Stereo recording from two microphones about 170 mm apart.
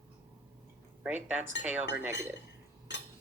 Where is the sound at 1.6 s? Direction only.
10° right (ahead or behind).